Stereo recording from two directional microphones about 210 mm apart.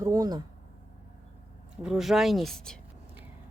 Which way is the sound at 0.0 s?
15° right (ahead or behind).